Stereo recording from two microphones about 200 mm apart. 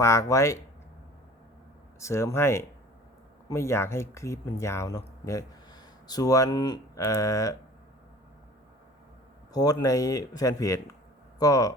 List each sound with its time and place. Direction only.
0.0 s speech: 15° left (ahead or behind)
2.0 s speech: 15° left (ahead or behind)
9.5 s speech: 20° left (ahead or behind)